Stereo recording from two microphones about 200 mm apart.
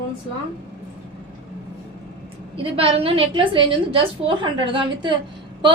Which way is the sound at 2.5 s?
30° right (ahead or behind).